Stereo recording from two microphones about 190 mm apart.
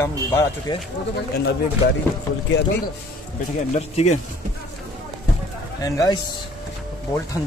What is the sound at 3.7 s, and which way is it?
Speech, 35° left (ahead or behind).